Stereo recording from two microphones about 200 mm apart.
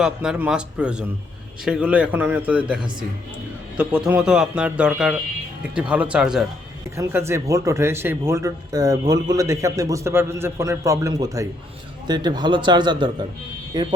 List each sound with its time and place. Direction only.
0.0 s a man's voice: 5° right (ahead or behind)
6.9 s a man's voice: 15° right (ahead or behind)